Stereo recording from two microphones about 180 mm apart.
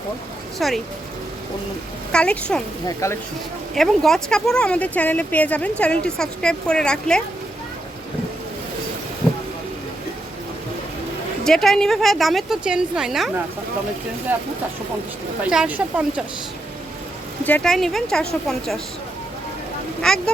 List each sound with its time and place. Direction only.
0.6 s speech: centre (ahead or behind)
2.1 s speech: 5° left (ahead or behind)
2.8 s speech: 15° left (ahead or behind)
3.8 s speech: centre (ahead or behind)
11.4 s speech: 5° left (ahead or behind)
15.4 s speech: 5° right (ahead or behind)
17.4 s speech: 5° left (ahead or behind)
20.0 s speech: 5° left (ahead or behind)